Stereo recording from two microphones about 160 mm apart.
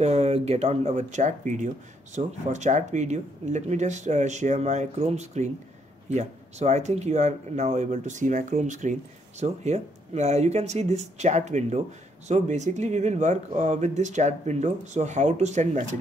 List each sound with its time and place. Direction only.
0.0 s speech: 40° right (ahead or behind)